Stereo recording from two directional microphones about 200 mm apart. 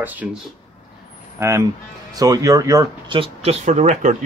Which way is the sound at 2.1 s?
15° right (ahead or behind).